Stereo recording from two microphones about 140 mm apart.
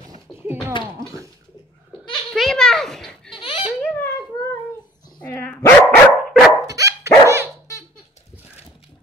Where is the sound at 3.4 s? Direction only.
35° left (ahead or behind).